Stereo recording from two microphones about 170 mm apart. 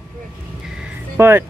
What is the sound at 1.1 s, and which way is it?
Speech, 15° right (ahead or behind).